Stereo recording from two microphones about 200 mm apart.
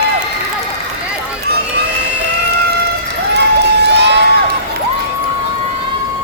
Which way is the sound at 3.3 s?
55° right (ahead or behind).